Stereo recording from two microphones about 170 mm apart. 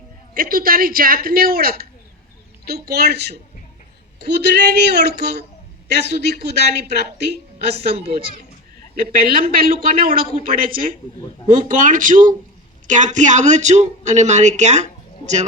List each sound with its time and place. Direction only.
0.3 s a man's voice: 60° right (ahead or behind)
9.0 s a man's voice: 60° right (ahead or behind); by 14.8 s 45° right (ahead or behind)